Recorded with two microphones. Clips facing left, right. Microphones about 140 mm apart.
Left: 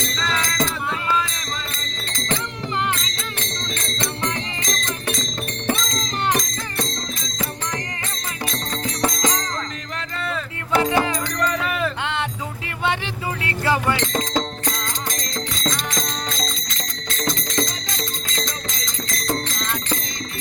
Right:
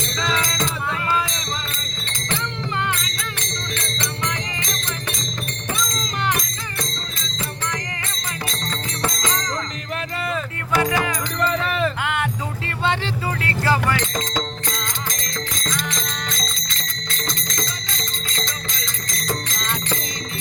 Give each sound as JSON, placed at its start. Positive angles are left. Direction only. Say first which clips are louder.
{"t": 0.2, "sound": "music", "louder": "right 1 dB", "side_deg": -15}
{"t": 9.0, "sound": "music", "louder": "left 3 dB", "side_deg": 20}
{"t": 10.8, "sound": "music", "louder": "left 2 dB", "side_deg": 25}
{"t": 13.4, "sound": "music", "louder": "even", "side_deg": 20}